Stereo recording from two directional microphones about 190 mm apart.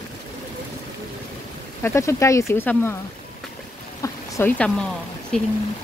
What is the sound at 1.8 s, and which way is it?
Speech, 15° left (ahead or behind).